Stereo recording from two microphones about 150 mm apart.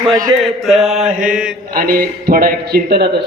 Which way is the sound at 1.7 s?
75° right (ahead or behind).